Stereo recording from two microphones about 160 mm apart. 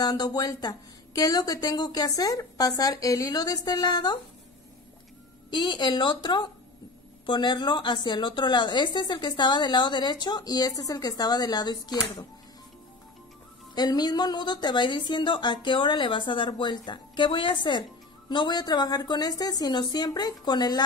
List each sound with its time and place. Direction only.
0.0 s a woman's voice: 25° left (ahead or behind)
5.5 s a woman's voice: 30° left (ahead or behind)
13.7 s a woman's voice: 25° left (ahead or behind)